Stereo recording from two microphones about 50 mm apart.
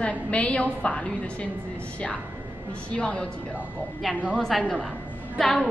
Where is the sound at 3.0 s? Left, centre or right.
Centre.